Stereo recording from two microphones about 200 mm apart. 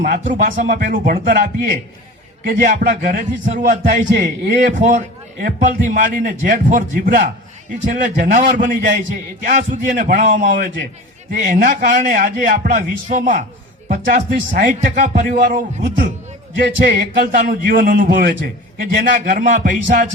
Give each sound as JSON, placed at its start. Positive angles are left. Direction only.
{"t": 0.0, "sound": "a man's voice", "side_deg": -45}
{"t": 2.4, "sound": "a man's voice", "side_deg": -40}